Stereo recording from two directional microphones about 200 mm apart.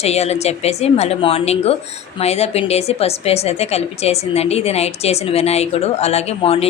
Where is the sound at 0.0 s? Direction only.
30° left (ahead or behind).